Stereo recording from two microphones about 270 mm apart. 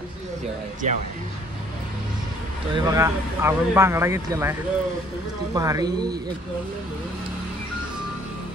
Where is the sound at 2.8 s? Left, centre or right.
Centre.